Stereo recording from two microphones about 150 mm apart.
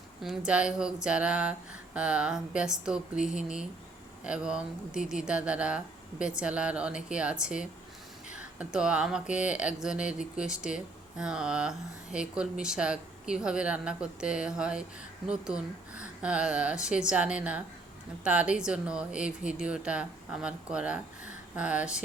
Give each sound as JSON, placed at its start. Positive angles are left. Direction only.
{"t": 0.2, "sound": "speech", "side_deg": -5}